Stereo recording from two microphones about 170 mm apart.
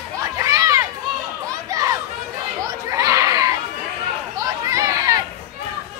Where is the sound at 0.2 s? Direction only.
20° right (ahead or behind).